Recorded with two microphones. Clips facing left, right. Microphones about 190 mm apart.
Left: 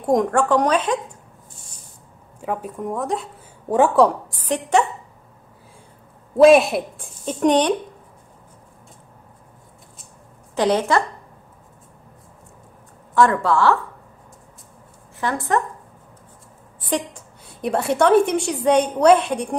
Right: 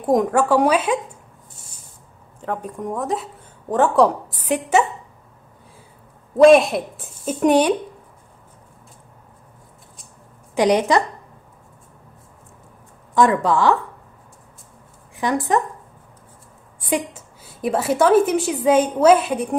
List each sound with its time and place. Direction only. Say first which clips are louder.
0.0 s a woman's voice: right 1 dB; centre (ahead or behind)
2.4 s a woman's voice: even; 5° left (ahead or behind)
3.6 s a woman's voice: left 1 dB; 10° left (ahead or behind); by 4.8 s 5° right (ahead or behind)
6.3 s a woman's voice: right 1 dB; centre (ahead or behind)
10.5 s speech: right 2 dB; 15° right (ahead or behind)
13.1 s a woman's voice: right 1 dB; 15° right (ahead or behind)
15.1 s speech: right 2 dB; 15° right (ahead or behind)
16.9 s a woman's voice: right 1 dB; 5° right (ahead or behind)